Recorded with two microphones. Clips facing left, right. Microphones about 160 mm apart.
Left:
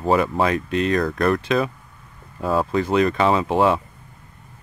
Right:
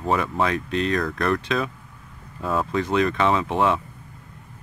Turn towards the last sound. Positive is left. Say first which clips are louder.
# left 3 dB
turn(degrees=5)  # may be behind; listen again after turning